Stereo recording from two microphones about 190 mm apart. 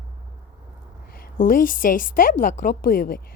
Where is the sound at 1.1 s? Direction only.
45° left (ahead or behind).